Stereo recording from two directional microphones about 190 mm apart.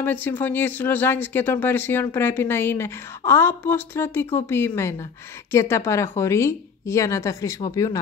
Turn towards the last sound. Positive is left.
turn(degrees=15)  # may be behind; listen again after turning